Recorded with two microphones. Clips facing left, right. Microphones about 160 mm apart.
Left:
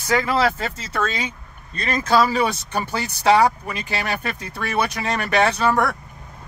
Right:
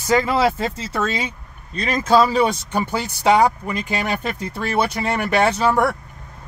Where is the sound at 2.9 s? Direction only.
15° right (ahead or behind).